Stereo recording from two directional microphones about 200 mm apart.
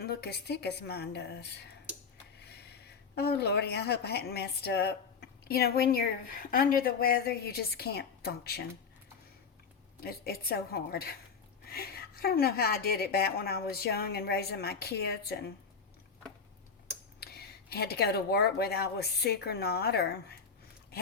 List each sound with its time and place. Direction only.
0.0 s a woman's voice: 55° left (ahead or behind)
10.0 s a woman's voice: 50° left (ahead or behind)
17.2 s a woman's voice: 55° left (ahead or behind)